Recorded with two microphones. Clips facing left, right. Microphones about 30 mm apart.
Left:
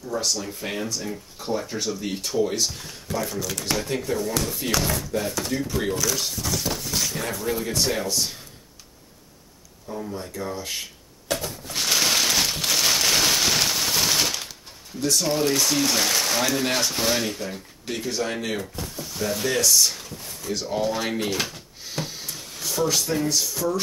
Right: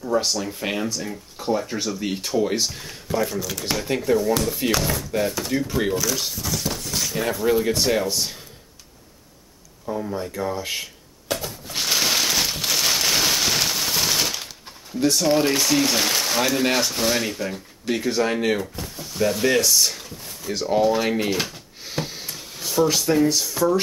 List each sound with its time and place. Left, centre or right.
0.2 s speech: centre
2.0 s speech: centre
9.9 s speech: centre
10.8 s a sound: centre
15.2 s speech: right
15.6 s speech: centre
18.8 s drawer open or close: centre
23.6 s speech: centre